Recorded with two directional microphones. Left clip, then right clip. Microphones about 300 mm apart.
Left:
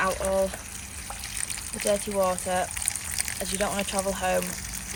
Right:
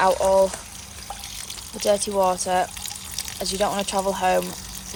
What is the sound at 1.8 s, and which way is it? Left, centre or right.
Speech, centre.